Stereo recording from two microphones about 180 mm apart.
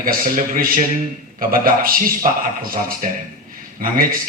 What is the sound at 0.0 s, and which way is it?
A man's voice, 50° right (ahead or behind).